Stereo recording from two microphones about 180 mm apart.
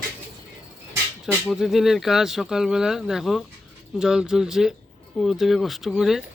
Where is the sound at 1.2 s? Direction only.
Centre (ahead or behind).